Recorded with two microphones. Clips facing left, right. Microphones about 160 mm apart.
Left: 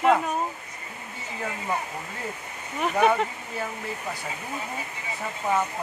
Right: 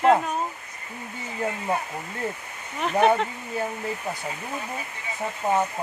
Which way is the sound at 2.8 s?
5° left (ahead or behind).